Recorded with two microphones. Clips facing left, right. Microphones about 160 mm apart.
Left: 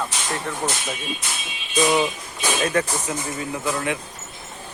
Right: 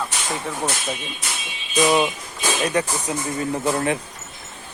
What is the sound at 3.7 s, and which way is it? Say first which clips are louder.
Speech: right 3 dB; 35° right (ahead or behind).